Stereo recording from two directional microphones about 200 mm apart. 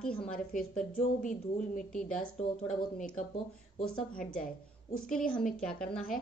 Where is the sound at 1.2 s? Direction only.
40° left (ahead or behind).